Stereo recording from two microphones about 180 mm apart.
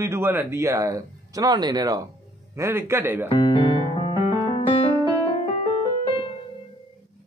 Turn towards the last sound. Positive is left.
turn(degrees=30)  # may be behind; listen again after turning